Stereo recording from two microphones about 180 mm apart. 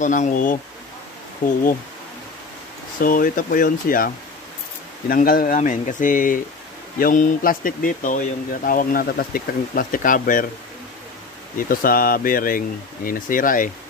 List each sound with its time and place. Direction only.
0.0 s speech: 45° left (ahead or behind)
3.0 s speech: 50° left (ahead or behind)
11.5 s speech: 50° left (ahead or behind)